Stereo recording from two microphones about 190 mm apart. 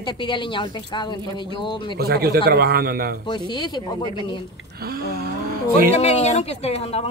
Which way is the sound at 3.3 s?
25° left (ahead or behind).